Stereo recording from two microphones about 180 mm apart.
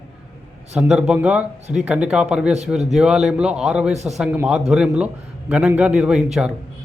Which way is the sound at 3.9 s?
40° right (ahead or behind).